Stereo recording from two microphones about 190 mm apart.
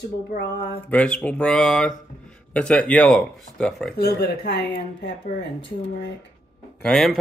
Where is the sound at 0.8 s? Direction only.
5° left (ahead or behind).